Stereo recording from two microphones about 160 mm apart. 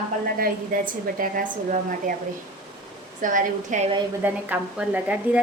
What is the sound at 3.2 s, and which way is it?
Speech, 55° right (ahead or behind).